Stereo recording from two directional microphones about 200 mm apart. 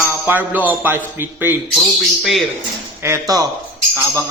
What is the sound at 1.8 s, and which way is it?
Speech, centre (ahead or behind).